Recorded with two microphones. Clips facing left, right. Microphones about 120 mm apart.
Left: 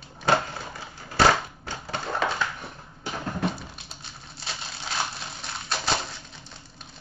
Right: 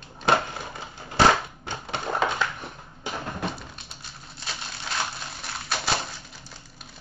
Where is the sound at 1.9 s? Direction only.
20° right (ahead or behind).